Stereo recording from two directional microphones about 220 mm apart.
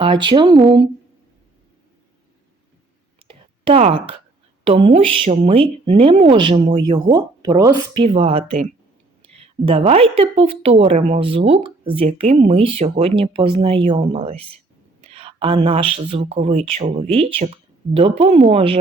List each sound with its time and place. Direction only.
0.0 s speech: 20° right (ahead or behind)
3.2 s a sound: 25° right (ahead or behind)
4.6 s speech: 25° right (ahead or behind)